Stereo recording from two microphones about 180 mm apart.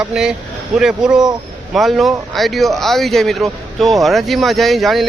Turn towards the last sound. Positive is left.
turn(degrees=0)  # may be behind; listen again after turning